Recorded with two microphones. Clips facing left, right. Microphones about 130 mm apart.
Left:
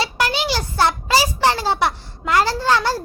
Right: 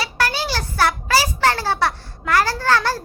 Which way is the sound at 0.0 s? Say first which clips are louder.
Left 2 dB; 20° left (ahead or behind).